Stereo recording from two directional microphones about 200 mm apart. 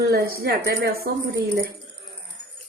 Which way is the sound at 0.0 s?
50° right (ahead or behind).